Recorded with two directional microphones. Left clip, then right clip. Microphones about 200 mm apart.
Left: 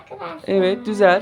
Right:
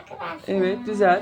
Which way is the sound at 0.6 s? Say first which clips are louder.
Left 5 dB; 40° left (ahead or behind).